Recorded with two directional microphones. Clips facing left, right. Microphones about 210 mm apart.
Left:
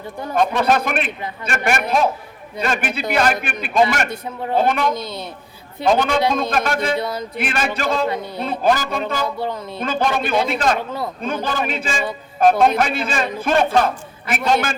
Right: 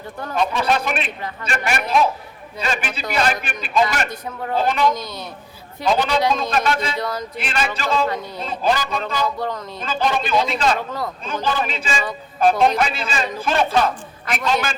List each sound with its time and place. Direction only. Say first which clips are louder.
0.3 s a man's voice: left 3 dB; 55° left (ahead or behind)
5.9 s a man's voice: left 2 dB; 50° left (ahead or behind)
7.0 s a sound: left 1 dB; 25° left (ahead or behind)
7.3 s a man's voice: left 2 dB; 50° left (ahead or behind)
9.4 s speech: left 1 dB; 10° left (ahead or behind)
9.7 s a man's voice: left 2 dB; 55° left (ahead or behind)